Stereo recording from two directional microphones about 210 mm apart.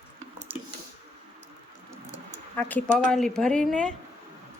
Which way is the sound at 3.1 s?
Centre (ahead or behind).